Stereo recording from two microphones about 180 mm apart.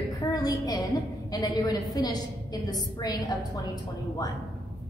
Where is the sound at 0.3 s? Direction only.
20° left (ahead or behind).